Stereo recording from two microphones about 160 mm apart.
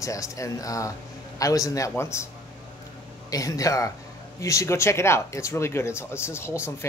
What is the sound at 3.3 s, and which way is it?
Speech, 20° left (ahead or behind).